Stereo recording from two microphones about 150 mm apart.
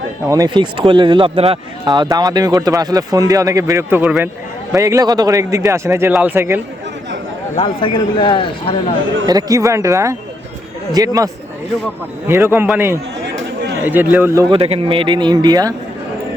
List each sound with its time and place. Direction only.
0.3 s speech: 25° right (ahead or behind)
1.9 s a man's voice: 25° right (ahead or behind)
7.5 s speech: 35° left (ahead or behind)
9.2 s speech: 25° right (ahead or behind)
12.3 s a man's voice: 15° right (ahead or behind)
14.5 s speech: 40° right (ahead or behind)